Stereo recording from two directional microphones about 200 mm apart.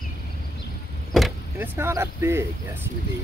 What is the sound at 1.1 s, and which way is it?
Vehicle, centre (ahead or behind).